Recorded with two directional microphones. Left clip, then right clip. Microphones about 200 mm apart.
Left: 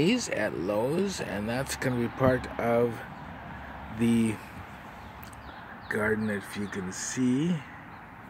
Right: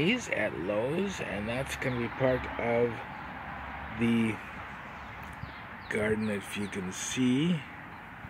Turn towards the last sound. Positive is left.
turn(degrees=0)  # may be behind; listen again after turning